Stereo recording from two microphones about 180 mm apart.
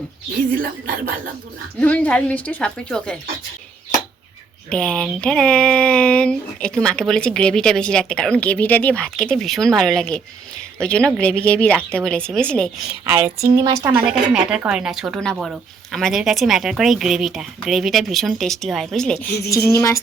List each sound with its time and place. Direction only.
0.5 s speech: 50° right (ahead or behind)
1.8 s a woman's voice: 10° left (ahead or behind)
4.7 s speech: 5° left (ahead or behind)
13.1 s speech: 15° right (ahead or behind)
13.9 s speech: 5° right (ahead or behind)
19.7 s a woman's voice: 15° left (ahead or behind)